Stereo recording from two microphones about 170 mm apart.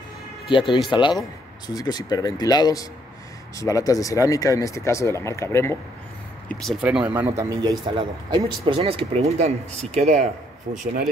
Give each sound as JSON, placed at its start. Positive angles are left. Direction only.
{"t": 0.5, "sound": "speech", "side_deg": 30}
{"t": 6.5, "sound": "a man's voice", "side_deg": 0}